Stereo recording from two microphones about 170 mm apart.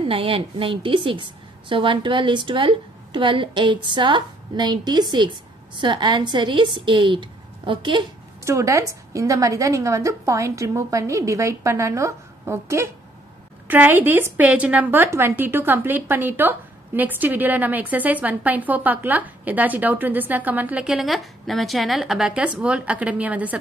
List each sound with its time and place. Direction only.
0.0 s a woman's voice: 30° right (ahead or behind)
8.5 s a woman's voice: 15° right (ahead or behind)